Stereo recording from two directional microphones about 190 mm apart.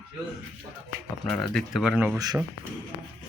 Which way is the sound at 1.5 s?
Centre (ahead or behind).